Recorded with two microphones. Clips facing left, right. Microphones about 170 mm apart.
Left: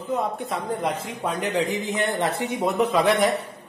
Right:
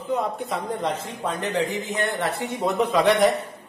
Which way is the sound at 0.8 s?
15° left (ahead or behind).